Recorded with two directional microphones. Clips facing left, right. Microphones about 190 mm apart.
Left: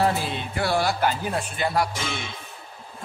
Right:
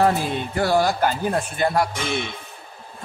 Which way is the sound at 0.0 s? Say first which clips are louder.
Right 4 dB; 45° right (ahead or behind).